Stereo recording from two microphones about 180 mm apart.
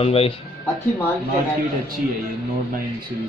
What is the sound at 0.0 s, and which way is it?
Speech, 30° left (ahead or behind).